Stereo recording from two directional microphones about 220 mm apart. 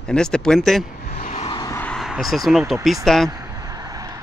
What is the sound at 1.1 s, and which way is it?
Vehicle, 30° left (ahead or behind).